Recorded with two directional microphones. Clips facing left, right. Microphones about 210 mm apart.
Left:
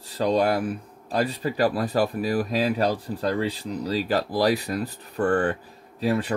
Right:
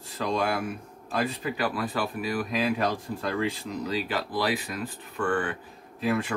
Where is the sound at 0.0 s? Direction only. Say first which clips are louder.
Left 6 dB; 35° left (ahead or behind).